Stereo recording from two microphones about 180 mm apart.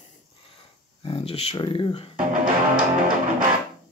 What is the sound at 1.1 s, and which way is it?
Speech, 35° left (ahead or behind).